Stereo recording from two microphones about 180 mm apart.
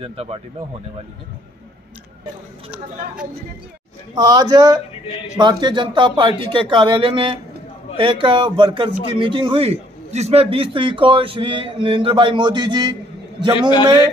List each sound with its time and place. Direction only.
0.0 s speech: 30° right (ahead or behind)
4.1 s a man's voice: 20° right (ahead or behind)